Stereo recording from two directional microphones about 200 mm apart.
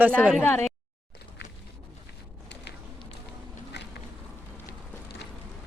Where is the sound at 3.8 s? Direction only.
60° left (ahead or behind).